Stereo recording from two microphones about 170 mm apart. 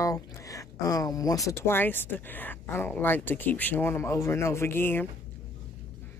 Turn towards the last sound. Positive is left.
turn(degrees=15)  # may be behind; listen again after turning